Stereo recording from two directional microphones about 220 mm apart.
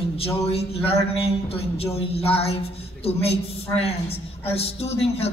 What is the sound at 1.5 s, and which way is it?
Speech, 25° left (ahead or behind).